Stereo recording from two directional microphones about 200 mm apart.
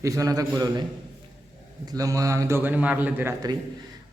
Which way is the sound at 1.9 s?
15° right (ahead or behind).